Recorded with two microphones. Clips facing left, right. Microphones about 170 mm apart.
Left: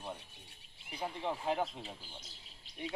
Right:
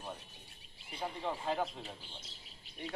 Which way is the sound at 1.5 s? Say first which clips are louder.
Left 1 dB; 10° left (ahead or behind).